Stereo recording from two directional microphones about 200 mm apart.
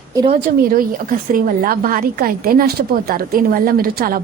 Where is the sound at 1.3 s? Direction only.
45° right (ahead or behind).